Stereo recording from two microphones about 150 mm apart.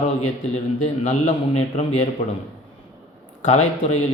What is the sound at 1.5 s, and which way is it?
Speech, 45° left (ahead or behind).